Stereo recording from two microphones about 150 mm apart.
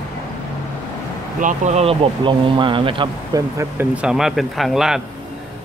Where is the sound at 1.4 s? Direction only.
45° right (ahead or behind).